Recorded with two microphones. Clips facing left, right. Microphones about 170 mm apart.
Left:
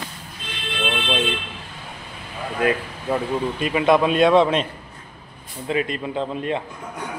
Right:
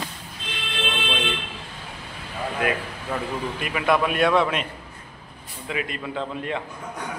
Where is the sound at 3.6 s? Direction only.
25° left (ahead or behind).